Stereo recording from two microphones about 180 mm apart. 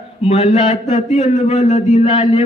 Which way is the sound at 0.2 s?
35° left (ahead or behind).